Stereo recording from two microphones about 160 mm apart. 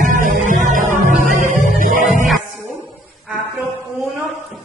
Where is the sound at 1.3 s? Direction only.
55° right (ahead or behind).